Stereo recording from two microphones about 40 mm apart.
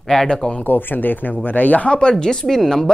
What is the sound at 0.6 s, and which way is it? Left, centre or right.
Speech, left.